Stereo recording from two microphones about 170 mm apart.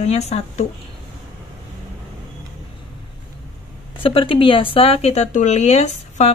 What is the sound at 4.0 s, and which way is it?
Speech, 30° left (ahead or behind).